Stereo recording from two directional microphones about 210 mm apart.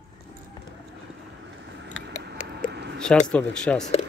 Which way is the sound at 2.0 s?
50° right (ahead or behind).